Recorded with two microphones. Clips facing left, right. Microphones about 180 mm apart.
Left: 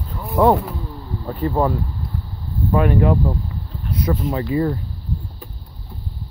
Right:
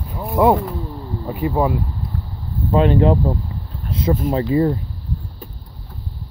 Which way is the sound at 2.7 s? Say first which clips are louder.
Right 2 dB; 25° right (ahead or behind).